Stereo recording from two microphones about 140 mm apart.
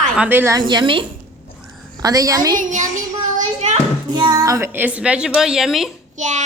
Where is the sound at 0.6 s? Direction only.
35° right (ahead or behind).